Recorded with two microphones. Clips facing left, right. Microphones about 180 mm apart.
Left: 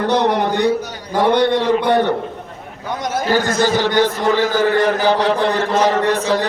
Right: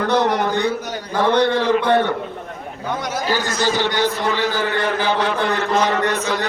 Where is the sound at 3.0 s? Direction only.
50° left (ahead or behind).